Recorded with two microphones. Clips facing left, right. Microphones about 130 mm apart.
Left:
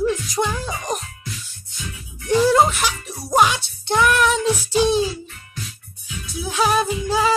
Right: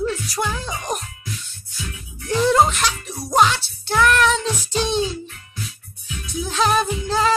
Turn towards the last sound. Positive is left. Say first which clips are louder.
# even
turn(degrees=10)  # may be behind; listen again after turning